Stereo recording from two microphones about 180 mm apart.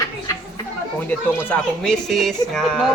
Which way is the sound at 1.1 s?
10° left (ahead or behind).